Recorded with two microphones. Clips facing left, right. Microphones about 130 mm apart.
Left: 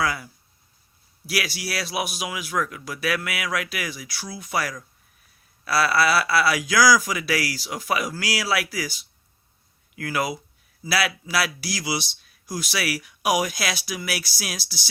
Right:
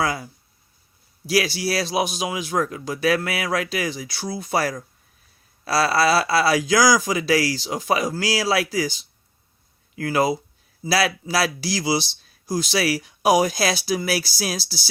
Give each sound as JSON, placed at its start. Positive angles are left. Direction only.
{"t": 0.0, "sound": "speech", "side_deg": -25}
{"t": 1.3, "sound": "speech", "side_deg": -30}